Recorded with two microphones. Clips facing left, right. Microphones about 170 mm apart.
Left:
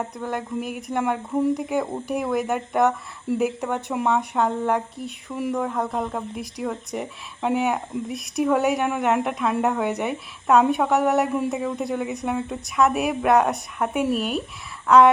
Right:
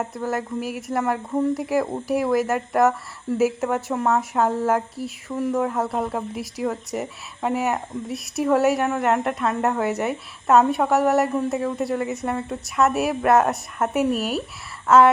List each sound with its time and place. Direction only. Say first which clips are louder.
0.0 s speech: right 2 dB; 5° right (ahead or behind)